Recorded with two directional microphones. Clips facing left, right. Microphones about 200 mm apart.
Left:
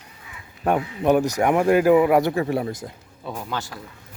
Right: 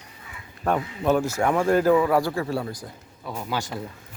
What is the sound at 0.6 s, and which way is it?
Speech, 15° left (ahead or behind).